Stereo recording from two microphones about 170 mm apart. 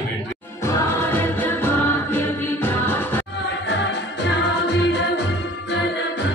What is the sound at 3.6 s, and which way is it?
Music, 90° left.